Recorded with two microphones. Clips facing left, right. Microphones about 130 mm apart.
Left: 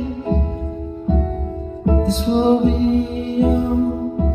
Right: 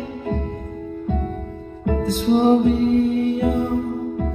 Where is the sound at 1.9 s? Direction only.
25° left (ahead or behind).